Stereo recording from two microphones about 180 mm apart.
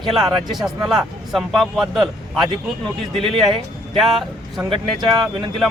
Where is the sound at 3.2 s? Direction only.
30° right (ahead or behind).